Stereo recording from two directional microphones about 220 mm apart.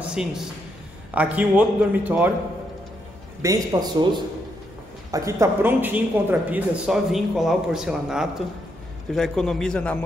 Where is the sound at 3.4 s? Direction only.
15° right (ahead or behind).